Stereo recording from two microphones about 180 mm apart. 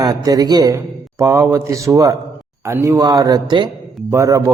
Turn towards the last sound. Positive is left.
turn(degrees=-15)  # may be behind; listen again after turning